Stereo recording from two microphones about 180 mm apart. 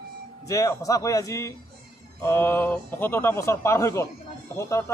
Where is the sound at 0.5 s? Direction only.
20° left (ahead or behind).